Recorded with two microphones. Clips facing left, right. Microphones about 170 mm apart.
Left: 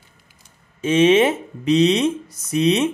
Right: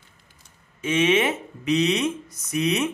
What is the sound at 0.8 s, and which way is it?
Speech, 30° left (ahead or behind).